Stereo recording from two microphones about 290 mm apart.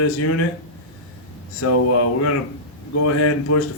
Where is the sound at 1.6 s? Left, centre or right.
Left.